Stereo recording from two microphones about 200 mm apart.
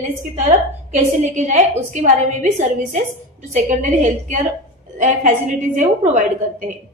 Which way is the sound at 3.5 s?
40° right (ahead or behind).